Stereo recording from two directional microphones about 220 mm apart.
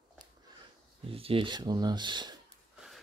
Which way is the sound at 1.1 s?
25° right (ahead or behind).